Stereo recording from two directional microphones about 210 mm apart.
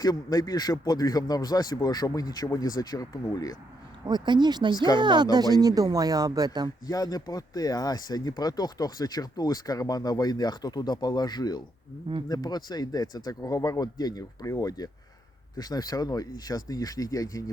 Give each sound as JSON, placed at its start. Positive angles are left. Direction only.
{"t": 0.0, "sound": "a man's voice", "side_deg": 15}
{"t": 4.0, "sound": "speech", "side_deg": -20}
{"t": 4.7, "sound": "speech", "side_deg": 20}
{"t": 4.9, "sound": "speech", "side_deg": -20}
{"t": 6.8, "sound": "a man's voice", "side_deg": 15}